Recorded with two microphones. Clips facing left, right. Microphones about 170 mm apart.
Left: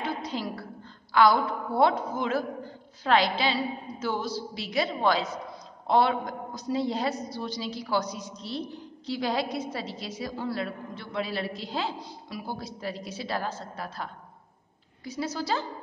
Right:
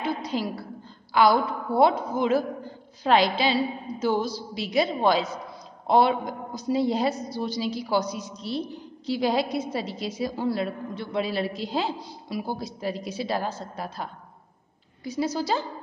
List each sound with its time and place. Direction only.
0.0 s a sound: 10° right (ahead or behind)
1.1 s a woman's voice: 10° right (ahead or behind)
15.0 s a woman's voice: 15° right (ahead or behind)